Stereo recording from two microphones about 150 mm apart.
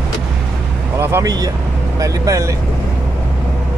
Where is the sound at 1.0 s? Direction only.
15° right (ahead or behind).